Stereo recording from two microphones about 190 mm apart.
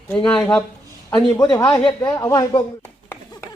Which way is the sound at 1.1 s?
20° left (ahead or behind).